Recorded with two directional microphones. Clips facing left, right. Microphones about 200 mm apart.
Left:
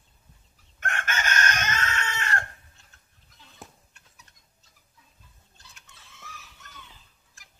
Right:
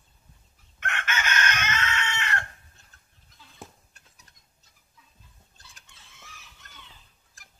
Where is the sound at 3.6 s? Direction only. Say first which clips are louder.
Right 2 dB; centre (ahead or behind).